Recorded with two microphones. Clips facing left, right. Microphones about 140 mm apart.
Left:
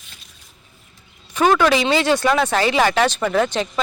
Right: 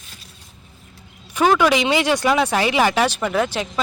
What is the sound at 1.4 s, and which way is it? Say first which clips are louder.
Speech: even; 10° right (ahead or behind).